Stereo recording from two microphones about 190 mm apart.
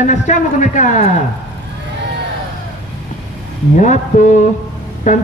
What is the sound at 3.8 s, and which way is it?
Speech, 40° left (ahead or behind).